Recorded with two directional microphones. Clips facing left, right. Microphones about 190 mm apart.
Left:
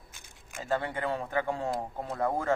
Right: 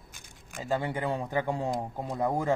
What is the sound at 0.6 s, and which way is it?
Speech, 10° right (ahead or behind).